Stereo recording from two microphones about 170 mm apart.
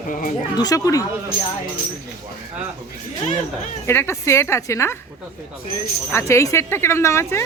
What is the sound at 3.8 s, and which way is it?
Speech, 15° left (ahead or behind).